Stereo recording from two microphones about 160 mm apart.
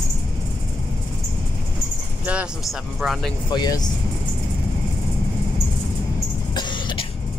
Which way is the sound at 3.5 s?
25° left (ahead or behind).